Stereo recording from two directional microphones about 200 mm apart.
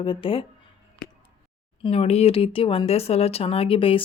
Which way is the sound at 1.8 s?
30° left (ahead or behind).